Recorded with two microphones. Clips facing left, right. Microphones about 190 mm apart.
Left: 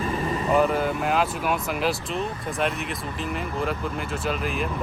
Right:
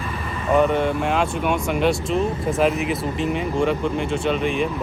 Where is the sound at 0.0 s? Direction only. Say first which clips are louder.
Left 4 dB; 40° left (ahead or behind).